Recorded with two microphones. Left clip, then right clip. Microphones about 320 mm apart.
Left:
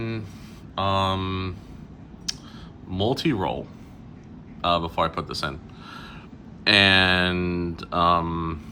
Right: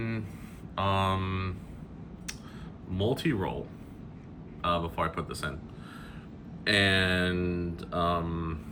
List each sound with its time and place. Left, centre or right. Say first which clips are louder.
0.8 s mantra: left 5 dB; centre
2.3 s a sound: left 10 dB; centre
2.9 s speech: left 6 dB; centre
4.6 s speech: left 7 dB; centre
6.7 s speech: left 8 dB; centre